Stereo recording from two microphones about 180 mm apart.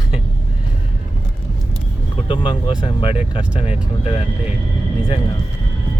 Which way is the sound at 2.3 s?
30° left (ahead or behind).